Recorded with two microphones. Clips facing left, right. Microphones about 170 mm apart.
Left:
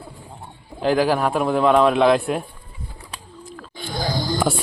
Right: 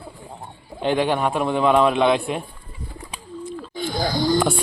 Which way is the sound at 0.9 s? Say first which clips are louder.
Left 2 dB; centre (ahead or behind).